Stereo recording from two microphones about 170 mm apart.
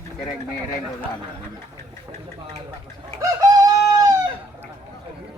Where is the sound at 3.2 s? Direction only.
20° right (ahead or behind).